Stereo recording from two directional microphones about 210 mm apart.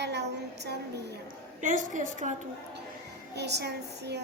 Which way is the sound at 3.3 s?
55° right (ahead or behind).